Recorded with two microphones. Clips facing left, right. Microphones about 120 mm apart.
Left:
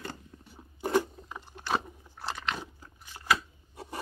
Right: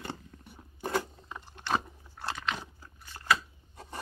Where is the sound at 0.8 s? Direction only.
15° left (ahead or behind).